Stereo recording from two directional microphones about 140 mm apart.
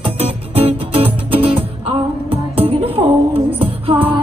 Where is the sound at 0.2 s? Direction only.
45° right (ahead or behind).